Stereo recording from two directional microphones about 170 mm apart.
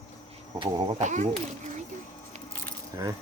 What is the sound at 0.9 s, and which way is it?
Speech, 45° right (ahead or behind).